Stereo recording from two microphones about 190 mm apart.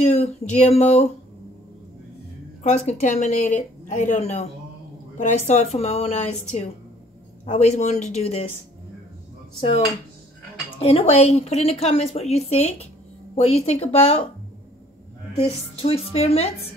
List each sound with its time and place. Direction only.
0.0 s a sound: 35° left (ahead or behind)
0.6 s a woman's voice: 35° left (ahead or behind)
2.6 s a woman's voice: 35° left (ahead or behind)
7.4 s a woman's voice: 35° left (ahead or behind)
9.6 s a woman's voice: 30° left (ahead or behind)
15.3 s a woman's voice: 30° left (ahead or behind)